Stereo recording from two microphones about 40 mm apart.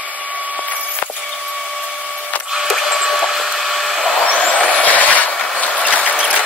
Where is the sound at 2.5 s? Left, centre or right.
Centre.